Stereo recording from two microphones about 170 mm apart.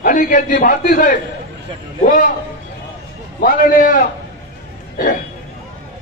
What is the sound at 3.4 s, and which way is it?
Speech, 55° left (ahead or behind).